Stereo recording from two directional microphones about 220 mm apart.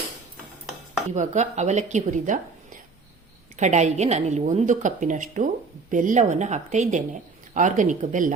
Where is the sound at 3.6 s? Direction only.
30° right (ahead or behind).